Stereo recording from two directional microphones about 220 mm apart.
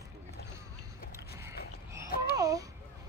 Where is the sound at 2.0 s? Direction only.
45° left (ahead or behind).